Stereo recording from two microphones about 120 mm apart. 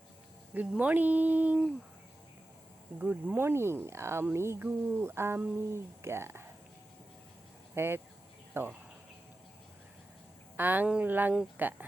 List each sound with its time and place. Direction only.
0.5 s speech: 10° right (ahead or behind)
3.0 s speech: 15° right (ahead or behind)
7.8 s speech: 20° right (ahead or behind)
10.6 s speech: 15° right (ahead or behind)